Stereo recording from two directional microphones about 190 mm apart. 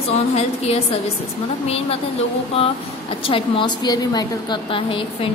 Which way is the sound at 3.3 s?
25° left (ahead or behind).